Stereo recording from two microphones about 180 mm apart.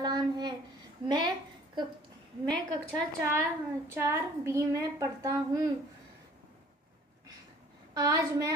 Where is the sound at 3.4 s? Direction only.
10° right (ahead or behind).